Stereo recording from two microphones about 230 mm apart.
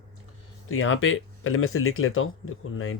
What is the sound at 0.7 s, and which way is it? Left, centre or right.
Speech, left.